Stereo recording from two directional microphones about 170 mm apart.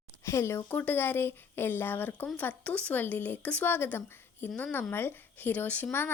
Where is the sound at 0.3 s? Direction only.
15° left (ahead or behind).